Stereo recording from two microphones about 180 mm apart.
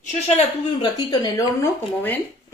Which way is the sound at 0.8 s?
20° left (ahead or behind).